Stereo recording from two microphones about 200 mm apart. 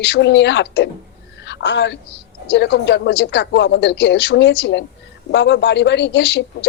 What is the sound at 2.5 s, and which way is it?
Speech, 60° left (ahead or behind).